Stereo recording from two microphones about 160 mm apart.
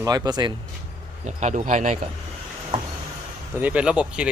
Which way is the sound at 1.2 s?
50° right (ahead or behind).